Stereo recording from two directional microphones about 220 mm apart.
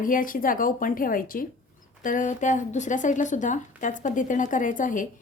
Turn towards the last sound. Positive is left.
turn(degrees=35)  # may be behind; listen again after turning